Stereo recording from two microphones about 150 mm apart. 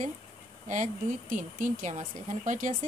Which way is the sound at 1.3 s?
55° right (ahead or behind).